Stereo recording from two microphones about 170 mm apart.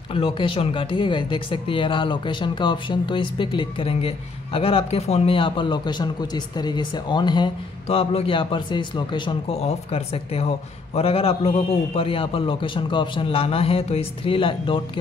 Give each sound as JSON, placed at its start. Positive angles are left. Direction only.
{"t": 0.1, "sound": "a man's voice", "side_deg": 30}